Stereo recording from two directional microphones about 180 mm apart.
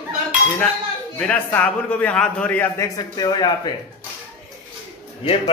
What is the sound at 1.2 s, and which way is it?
A man's voice, 5° left (ahead or behind).